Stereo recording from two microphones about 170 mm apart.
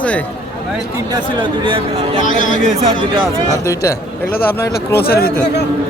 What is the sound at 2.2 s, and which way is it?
Speech, 50° left (ahead or behind).